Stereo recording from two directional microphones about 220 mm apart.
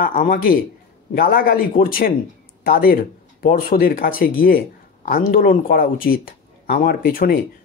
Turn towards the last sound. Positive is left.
turn(degrees=40)  # may be behind; listen again after turning